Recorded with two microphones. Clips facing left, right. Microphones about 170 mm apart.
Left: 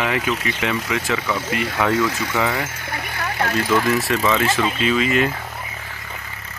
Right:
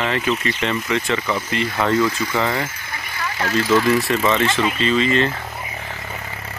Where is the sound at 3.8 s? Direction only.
Centre (ahead or behind).